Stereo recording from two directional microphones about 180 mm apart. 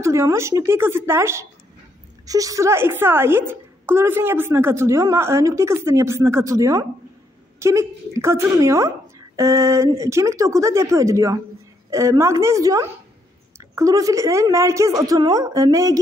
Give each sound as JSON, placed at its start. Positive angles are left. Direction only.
{"t": 0.0, "sound": "a woman's voice", "side_deg": -15}